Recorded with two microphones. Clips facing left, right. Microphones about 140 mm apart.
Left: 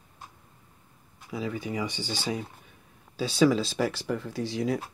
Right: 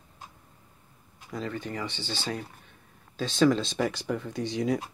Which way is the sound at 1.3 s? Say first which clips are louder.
Left 2 dB; 10° left (ahead or behind).